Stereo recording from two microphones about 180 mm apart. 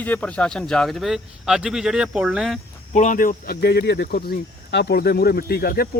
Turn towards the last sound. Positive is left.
turn(degrees=60)  # may be behind; listen again after turning